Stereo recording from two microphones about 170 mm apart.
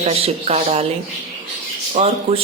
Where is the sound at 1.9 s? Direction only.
35° right (ahead or behind).